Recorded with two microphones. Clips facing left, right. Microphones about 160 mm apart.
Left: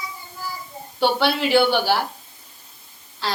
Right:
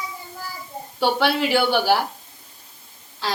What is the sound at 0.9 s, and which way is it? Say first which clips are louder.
Speech: even; 10° right (ahead or behind).